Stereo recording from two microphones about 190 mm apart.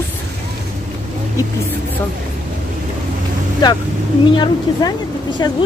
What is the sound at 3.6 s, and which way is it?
Speech, 20° left (ahead or behind).